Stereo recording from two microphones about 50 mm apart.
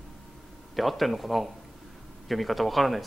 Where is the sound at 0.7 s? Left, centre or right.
Centre.